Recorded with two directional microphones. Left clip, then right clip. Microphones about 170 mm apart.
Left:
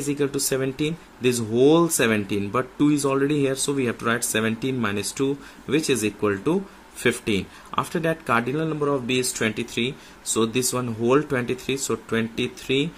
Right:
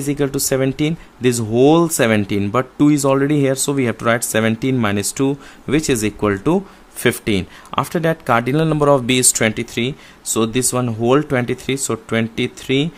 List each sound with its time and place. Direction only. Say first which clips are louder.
0.0 s speech: right 5 dB; 35° right (ahead or behind); by 9.3 s 60° right (ahead or behind)
9.4 s speech: right 6 dB; 35° right (ahead or behind)